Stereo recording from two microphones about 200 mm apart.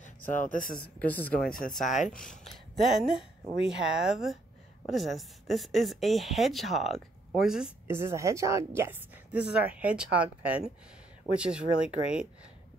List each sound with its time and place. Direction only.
0.0 s speech: 40° left (ahead or behind)
0.8 s speech: 10° left (ahead or behind)